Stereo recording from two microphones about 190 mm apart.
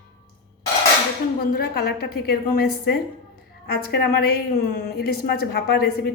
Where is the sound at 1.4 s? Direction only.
55° left (ahead or behind).